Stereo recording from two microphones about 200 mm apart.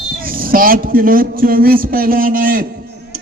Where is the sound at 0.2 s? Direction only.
45° right (ahead or behind).